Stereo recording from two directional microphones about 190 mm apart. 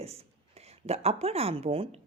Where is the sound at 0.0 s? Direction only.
30° right (ahead or behind).